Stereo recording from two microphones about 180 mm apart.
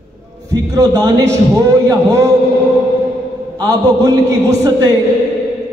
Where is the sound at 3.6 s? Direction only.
15° right (ahead or behind).